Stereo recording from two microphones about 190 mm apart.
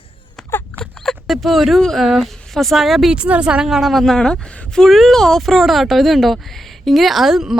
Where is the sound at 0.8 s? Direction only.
Centre (ahead or behind).